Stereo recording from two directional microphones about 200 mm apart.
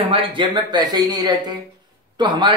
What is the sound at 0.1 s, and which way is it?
Speech, 25° right (ahead or behind).